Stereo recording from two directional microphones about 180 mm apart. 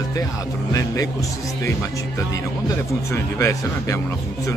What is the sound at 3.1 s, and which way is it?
Speech, 15° left (ahead or behind).